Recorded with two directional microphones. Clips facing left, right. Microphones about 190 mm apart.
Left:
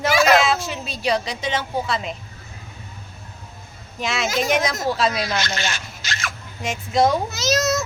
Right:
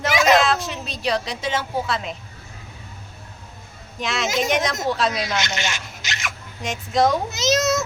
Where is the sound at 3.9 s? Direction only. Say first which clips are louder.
Even; centre (ahead or behind).